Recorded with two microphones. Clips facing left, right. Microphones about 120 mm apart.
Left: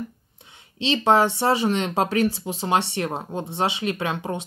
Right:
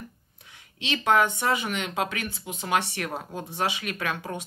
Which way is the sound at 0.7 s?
30° left (ahead or behind).